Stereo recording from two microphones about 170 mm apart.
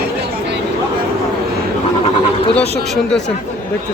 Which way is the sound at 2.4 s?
35° left (ahead or behind).